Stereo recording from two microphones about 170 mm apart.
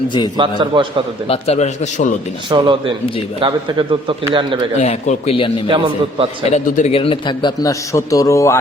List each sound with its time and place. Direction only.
0.3 s speech: 30° right (ahead or behind)
1.3 s a man's voice: 40° left (ahead or behind)
2.5 s speech: 30° right (ahead or behind)
4.8 s a man's voice: 40° left (ahead or behind)
5.6 s a man's voice: 30° right (ahead or behind)
6.4 s a man's voice: 45° left (ahead or behind); by 8.5 s 20° left (ahead or behind)